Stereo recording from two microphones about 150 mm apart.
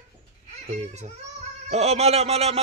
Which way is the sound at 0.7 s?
50° right (ahead or behind).